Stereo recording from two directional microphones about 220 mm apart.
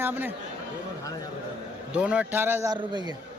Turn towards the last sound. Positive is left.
turn(degrees=-20)  # may be behind; listen again after turning